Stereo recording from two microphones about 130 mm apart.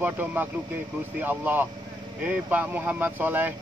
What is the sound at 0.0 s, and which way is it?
Speech, 15° right (ahead or behind).